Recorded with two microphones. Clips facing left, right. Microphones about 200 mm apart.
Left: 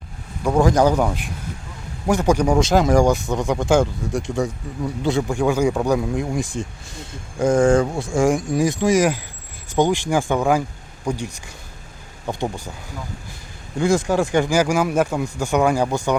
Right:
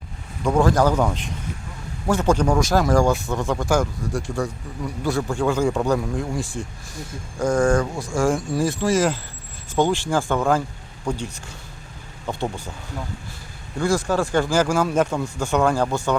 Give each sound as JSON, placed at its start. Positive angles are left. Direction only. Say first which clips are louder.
{"t": 0.4, "sound": "speech", "louder": "left 2 dB", "side_deg": 15}
{"t": 2.6, "sound": "speech", "louder": "left 3 dB", "side_deg": 25}
{"t": 13.7, "sound": "speech", "louder": "left 3 dB", "side_deg": 20}